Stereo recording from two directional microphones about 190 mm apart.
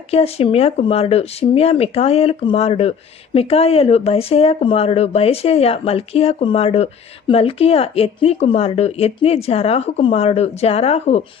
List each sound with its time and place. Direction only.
0.1 s speech: 30° left (ahead or behind)